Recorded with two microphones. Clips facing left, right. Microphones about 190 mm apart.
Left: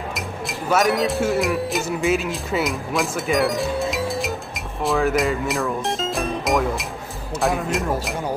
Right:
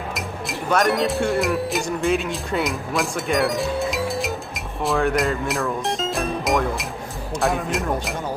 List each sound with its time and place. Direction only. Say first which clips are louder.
0.1 s speech: even; centre (ahead or behind)